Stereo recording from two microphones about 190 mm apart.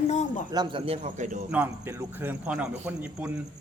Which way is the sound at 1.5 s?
10° right (ahead or behind).